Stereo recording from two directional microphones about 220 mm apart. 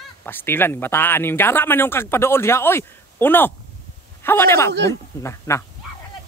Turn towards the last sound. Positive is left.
turn(degrees=15)  # may be behind; listen again after turning